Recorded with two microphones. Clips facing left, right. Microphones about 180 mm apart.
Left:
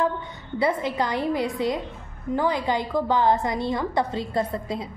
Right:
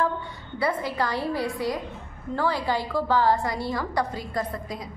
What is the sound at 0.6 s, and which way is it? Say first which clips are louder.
A woman's voice: left 3 dB; 20° left (ahead or behind).